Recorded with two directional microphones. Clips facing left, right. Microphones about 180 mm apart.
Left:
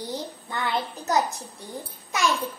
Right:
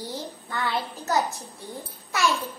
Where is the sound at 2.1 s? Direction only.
20° left (ahead or behind).